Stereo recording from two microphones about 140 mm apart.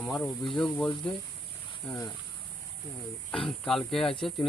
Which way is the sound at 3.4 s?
5° left (ahead or behind).